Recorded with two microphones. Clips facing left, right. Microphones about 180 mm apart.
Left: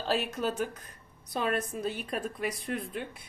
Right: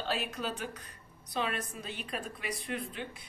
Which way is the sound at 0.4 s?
45° left (ahead or behind).